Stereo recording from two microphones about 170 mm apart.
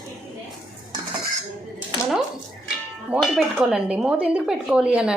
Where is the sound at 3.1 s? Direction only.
Centre (ahead or behind).